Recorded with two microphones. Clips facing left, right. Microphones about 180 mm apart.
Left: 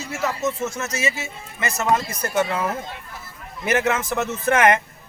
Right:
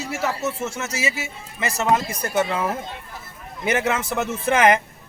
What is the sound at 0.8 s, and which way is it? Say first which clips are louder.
A man's voice: left 1 dB; 10° right (ahead or behind).